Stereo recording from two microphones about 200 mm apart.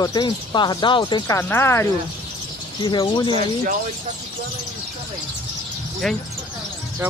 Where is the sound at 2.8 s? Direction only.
20° left (ahead or behind).